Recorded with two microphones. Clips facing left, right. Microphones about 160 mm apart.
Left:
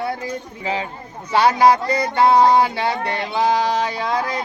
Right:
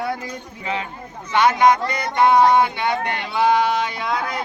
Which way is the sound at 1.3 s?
35° left (ahead or behind).